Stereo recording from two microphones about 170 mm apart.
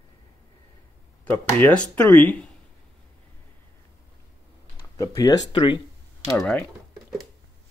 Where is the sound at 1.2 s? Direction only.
10° left (ahead or behind).